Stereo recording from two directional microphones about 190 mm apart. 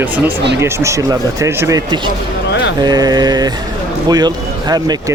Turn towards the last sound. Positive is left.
turn(degrees=-20)  # may be behind; listen again after turning